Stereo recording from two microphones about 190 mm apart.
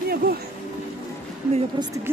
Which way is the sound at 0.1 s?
55° right (ahead or behind).